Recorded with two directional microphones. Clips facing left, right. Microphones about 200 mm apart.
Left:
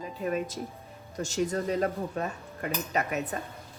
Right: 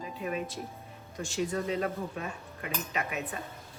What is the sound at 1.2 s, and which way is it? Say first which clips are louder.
A woman's voice: left 3 dB; 40° left (ahead or behind).